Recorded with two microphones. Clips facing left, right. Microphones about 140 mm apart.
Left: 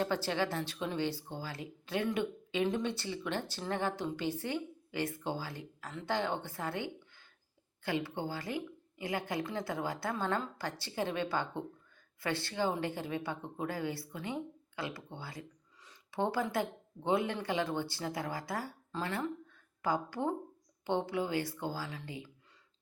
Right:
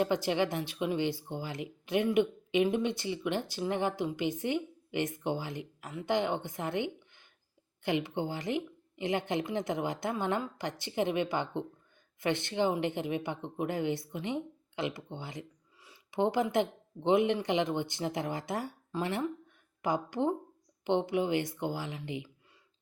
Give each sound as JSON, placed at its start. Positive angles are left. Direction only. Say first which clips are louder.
{"t": 0.0, "sound": "speech", "louder": "right 4 dB", "side_deg": -15}